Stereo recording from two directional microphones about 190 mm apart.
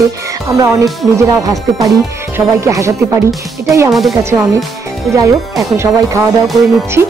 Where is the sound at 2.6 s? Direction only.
15° right (ahead or behind).